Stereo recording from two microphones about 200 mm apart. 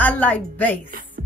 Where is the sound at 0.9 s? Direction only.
45° right (ahead or behind).